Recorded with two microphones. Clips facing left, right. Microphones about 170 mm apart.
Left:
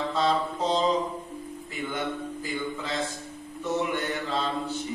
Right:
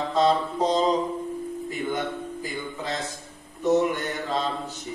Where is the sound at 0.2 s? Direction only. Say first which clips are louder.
Right 5 dB; 45° right (ahead or behind).